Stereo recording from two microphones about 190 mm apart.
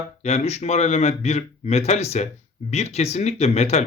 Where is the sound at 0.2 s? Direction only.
35° left (ahead or behind).